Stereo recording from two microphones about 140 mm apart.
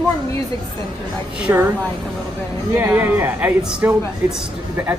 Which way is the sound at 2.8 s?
10° right (ahead or behind).